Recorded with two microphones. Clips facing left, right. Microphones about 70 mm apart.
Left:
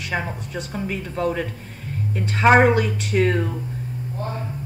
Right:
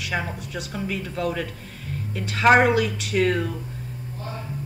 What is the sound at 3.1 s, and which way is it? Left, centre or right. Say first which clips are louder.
Speech: left 2 dB; centre.